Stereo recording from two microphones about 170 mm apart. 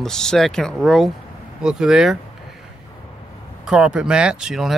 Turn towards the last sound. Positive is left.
turn(degrees=0)  # may be behind; listen again after turning